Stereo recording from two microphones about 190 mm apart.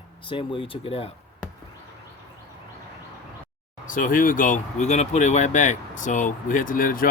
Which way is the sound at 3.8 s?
45° left (ahead or behind).